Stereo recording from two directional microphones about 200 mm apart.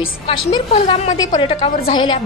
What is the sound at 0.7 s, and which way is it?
A woman's voice, 35° left (ahead or behind).